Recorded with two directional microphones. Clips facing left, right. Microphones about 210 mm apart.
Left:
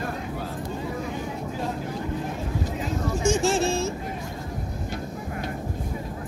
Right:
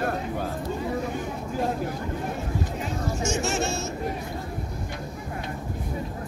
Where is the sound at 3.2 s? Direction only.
30° left (ahead or behind).